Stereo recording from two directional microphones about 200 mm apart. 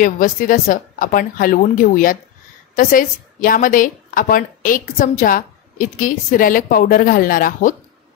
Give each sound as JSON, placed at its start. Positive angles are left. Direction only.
{"t": 0.0, "sound": "a woman's voice", "side_deg": 40}